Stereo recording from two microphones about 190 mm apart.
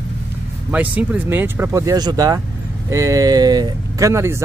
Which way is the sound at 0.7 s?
10° right (ahead or behind).